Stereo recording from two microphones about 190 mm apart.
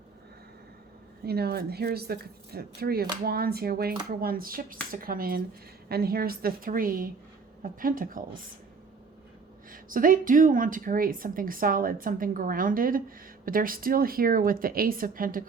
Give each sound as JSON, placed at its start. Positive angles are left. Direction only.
{"t": 1.2, "sound": "speech", "side_deg": -55}
{"t": 9.7, "sound": "speech", "side_deg": -45}